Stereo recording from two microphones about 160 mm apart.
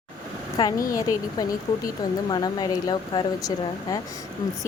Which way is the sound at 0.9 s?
20° left (ahead or behind).